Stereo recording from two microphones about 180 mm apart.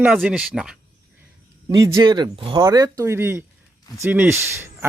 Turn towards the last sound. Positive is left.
turn(degrees=-15)  # may be behind; listen again after turning